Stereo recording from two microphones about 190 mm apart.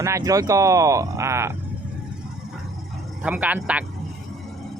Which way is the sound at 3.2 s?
10° right (ahead or behind).